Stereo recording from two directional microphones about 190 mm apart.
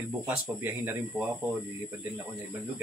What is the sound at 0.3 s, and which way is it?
Speech, 10° right (ahead or behind).